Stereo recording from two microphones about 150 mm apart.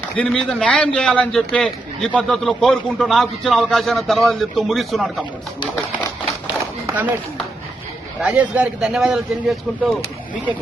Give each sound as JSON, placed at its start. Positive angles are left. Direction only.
{"t": 0.2, "sound": "a man's voice", "side_deg": 5}
{"t": 6.8, "sound": "run", "side_deg": -10}
{"t": 8.2, "sound": "a man's voice", "side_deg": -10}